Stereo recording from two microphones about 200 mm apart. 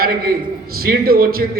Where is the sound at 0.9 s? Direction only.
50° right (ahead or behind).